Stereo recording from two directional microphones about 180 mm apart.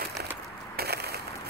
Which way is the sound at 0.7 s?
60° right (ahead or behind).